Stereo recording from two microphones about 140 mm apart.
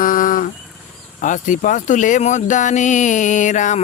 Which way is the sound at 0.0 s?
80° left.